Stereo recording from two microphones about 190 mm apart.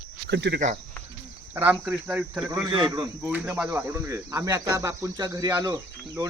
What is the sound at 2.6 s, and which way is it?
Speech, 25° right (ahead or behind).